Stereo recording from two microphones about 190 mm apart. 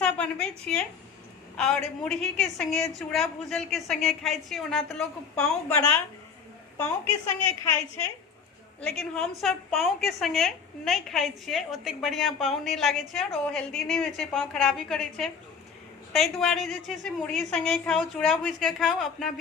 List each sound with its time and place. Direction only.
0.0 s a woman's voice: 5° left (ahead or behind)
9.0 s a woman's voice: 5° left (ahead or behind)